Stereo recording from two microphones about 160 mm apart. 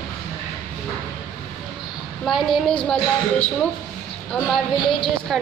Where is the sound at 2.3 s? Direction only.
Centre (ahead or behind).